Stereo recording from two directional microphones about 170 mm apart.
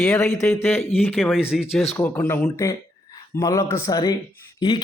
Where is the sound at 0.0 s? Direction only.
5° left (ahead or behind).